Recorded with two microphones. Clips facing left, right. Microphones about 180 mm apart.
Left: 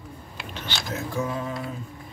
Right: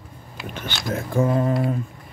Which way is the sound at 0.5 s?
50° right (ahead or behind).